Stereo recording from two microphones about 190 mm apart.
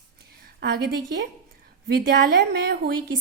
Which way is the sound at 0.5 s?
60° right (ahead or behind).